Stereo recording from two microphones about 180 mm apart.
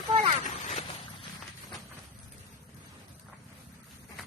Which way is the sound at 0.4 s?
40° left (ahead or behind).